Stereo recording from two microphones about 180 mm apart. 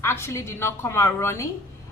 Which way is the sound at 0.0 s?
15° left (ahead or behind).